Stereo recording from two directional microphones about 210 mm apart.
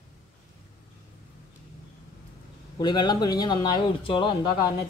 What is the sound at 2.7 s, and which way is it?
Speech, 20° left (ahead or behind).